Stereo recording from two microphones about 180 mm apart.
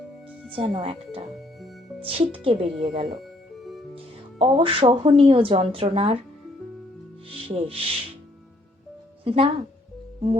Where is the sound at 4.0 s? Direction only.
30° right (ahead or behind).